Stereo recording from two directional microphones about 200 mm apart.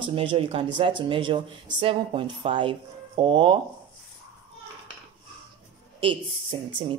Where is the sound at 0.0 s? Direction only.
25° right (ahead or behind).